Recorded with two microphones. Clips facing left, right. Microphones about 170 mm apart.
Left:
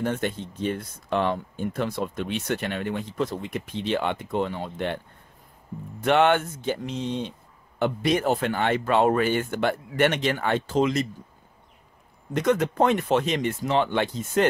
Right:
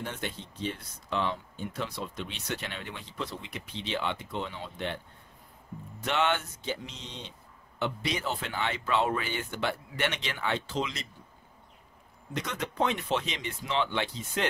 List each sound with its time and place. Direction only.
0.0 s speech: 50° left (ahead or behind)
12.4 s speech: 50° left (ahead or behind)